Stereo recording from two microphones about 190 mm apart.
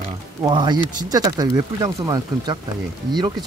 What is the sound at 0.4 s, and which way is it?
Speech, 25° right (ahead or behind).